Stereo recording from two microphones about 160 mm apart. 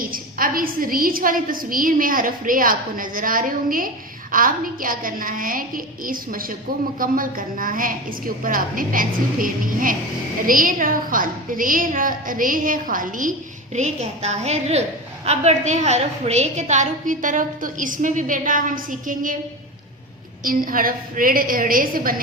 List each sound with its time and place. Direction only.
0.0 s a woman's voice: 60° right (ahead or behind)
13.7 s a woman's voice: 45° right (ahead or behind)
20.4 s a woman's voice: 60° right (ahead or behind)